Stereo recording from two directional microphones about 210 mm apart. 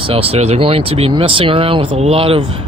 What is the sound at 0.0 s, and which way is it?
Speech, 25° right (ahead or behind).